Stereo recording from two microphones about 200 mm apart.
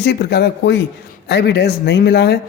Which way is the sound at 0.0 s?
55° left (ahead or behind).